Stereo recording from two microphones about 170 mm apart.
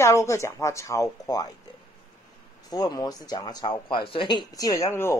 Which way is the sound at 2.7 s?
20° left (ahead or behind).